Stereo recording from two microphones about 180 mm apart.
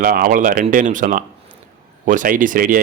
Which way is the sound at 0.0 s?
50° right (ahead or behind).